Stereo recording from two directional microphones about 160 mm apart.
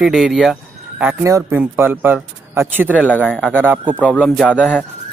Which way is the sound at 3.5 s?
10° right (ahead or behind).